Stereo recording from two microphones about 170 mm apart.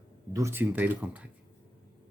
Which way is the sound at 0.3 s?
15° right (ahead or behind).